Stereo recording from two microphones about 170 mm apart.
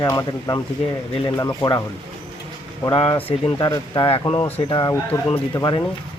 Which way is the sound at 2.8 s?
25° left (ahead or behind).